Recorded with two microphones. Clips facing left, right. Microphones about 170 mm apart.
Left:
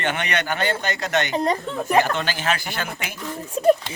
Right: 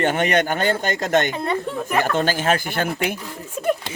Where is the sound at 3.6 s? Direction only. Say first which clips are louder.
Left 5 dB; 30° left (ahead or behind).